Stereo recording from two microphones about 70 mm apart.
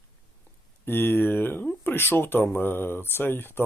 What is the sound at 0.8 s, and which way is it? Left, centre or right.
Speech, left.